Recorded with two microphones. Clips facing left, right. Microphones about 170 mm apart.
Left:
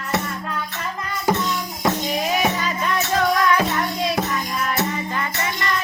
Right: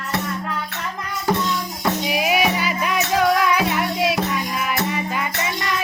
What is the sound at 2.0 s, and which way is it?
Music, 10° right (ahead or behind).